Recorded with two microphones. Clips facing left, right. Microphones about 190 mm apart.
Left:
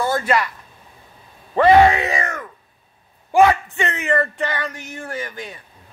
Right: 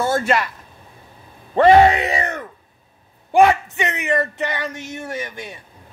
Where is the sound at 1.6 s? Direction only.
25° right (ahead or behind).